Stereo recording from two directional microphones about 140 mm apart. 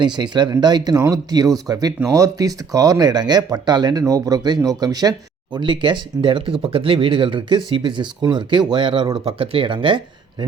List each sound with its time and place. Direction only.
0.0 s speech: 30° right (ahead or behind)